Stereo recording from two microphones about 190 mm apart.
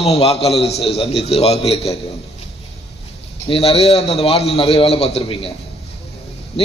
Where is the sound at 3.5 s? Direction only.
30° left (ahead or behind).